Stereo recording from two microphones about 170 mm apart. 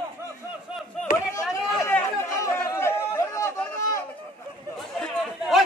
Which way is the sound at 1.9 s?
10° left (ahead or behind).